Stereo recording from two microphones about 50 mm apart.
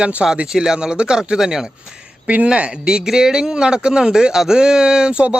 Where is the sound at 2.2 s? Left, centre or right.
Right.